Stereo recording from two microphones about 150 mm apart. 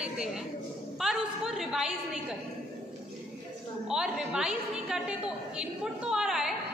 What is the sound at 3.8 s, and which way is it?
A woman's voice, 5° right (ahead or behind).